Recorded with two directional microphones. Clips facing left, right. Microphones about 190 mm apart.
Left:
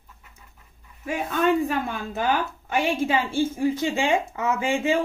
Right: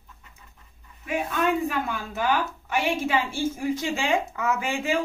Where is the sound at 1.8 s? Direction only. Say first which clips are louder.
Left 1 dB; 25° left (ahead or behind).